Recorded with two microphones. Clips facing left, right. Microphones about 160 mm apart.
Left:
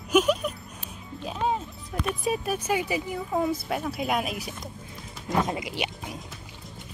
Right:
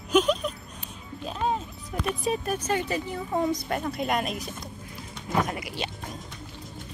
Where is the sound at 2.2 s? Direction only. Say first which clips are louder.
Left 1 dB; 5° left (ahead or behind).